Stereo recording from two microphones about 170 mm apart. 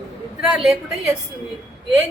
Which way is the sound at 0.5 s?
Centre (ahead or behind).